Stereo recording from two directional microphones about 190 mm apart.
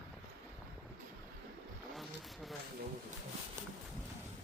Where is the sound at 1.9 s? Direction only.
Centre (ahead or behind).